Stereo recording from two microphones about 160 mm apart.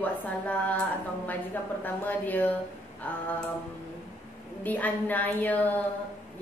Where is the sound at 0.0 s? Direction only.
10° left (ahead or behind).